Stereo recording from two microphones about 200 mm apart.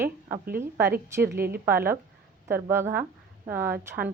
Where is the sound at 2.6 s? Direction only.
15° right (ahead or behind).